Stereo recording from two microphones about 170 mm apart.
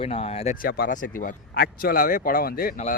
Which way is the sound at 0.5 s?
60° left (ahead or behind).